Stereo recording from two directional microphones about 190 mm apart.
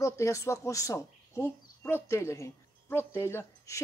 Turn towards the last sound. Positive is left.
turn(degrees=15)  # may be behind; listen again after turning